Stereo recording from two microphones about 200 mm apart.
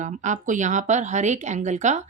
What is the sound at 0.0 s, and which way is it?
A woman's voice, 40° right (ahead or behind).